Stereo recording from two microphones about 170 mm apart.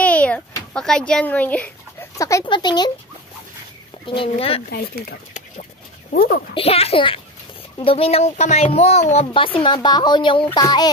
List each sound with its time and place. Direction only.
0.0 s a sound: 5° left (ahead or behind)
2.1 s speech: 20° left (ahead or behind)
4.1 s speech: 30° left (ahead or behind)
4.6 s speech: 65° left (ahead or behind)
6.1 s speech: 65° left (ahead or behind)
6.5 s speech: 35° left (ahead or behind)